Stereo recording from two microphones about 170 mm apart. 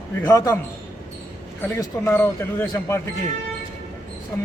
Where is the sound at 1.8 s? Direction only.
15° left (ahead or behind).